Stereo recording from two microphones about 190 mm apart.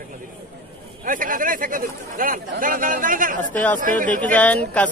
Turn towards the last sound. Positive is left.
turn(degrees=5)  # may be behind; listen again after turning